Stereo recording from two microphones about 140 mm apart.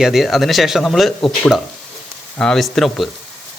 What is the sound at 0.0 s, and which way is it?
A man's voice, centre (ahead or behind).